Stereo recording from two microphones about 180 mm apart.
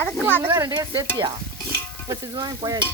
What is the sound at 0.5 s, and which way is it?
Speech, 20° right (ahead or behind).